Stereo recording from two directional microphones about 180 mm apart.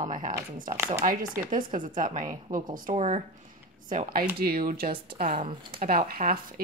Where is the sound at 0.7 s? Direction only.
15° right (ahead or behind).